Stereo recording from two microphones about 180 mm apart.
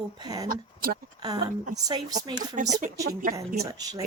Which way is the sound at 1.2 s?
20° right (ahead or behind).